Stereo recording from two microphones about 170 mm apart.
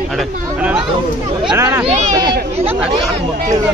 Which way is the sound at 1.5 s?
15° right (ahead or behind).